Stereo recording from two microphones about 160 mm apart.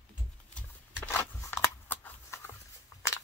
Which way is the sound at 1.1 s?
20° left (ahead or behind).